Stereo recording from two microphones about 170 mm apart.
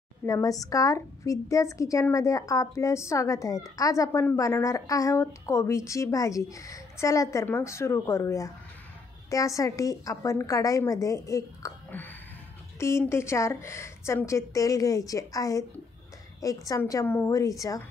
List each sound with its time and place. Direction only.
0.3 s a woman's voice: 20° left (ahead or behind)
16.6 s a woman's voice: 20° left (ahead or behind)